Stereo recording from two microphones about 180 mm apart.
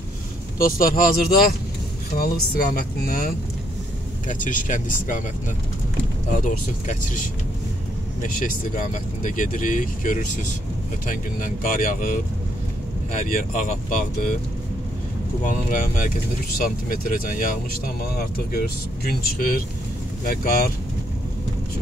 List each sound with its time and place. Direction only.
0.6 s speech: 50° left (ahead or behind)
6.3 s speech: 45° left (ahead or behind)
13.3 s speech: 45° left (ahead or behind)
15.4 s speech: 45° left (ahead or behind)